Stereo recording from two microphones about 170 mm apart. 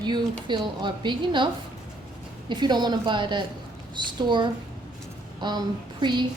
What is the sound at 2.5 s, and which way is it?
Speech, 25° right (ahead or behind).